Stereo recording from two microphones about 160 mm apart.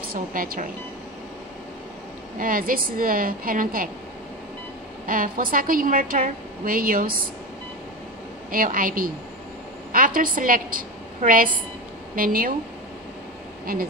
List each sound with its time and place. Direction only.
0.1 s a woman's voice: 65° right (ahead or behind)
2.3 s a woman's voice: 60° right (ahead or behind)
5.0 s a woman's voice: 60° right (ahead or behind)
8.5 s a woman's voice: 60° right (ahead or behind)